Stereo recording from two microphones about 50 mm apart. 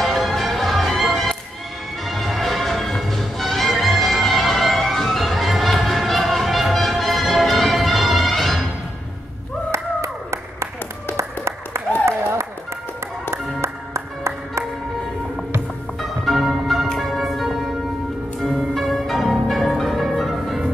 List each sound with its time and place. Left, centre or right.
0.0 s music: centre
9.7 s clapping: right
11.1 s applause: right
12.1 s a sound: right
13.3 s music: right
16.0 s music: centre
18.4 s change ringing: centre